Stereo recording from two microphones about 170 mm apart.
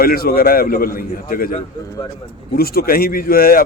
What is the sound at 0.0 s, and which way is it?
A man's voice, 60° left (ahead or behind).